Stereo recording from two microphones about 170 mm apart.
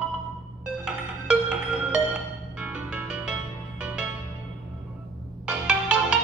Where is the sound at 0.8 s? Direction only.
5° right (ahead or behind).